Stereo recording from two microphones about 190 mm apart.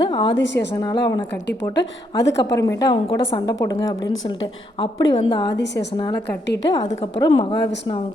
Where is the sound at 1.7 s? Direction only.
70° left (ahead or behind).